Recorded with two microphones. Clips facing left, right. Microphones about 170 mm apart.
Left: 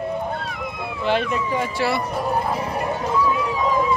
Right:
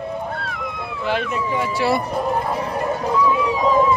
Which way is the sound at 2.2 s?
10° left (ahead or behind).